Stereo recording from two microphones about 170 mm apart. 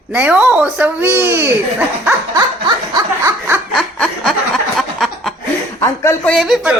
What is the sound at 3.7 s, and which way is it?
Snicker, centre (ahead or behind).